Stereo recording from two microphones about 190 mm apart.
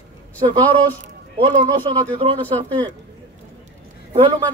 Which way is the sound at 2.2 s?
30° right (ahead or behind).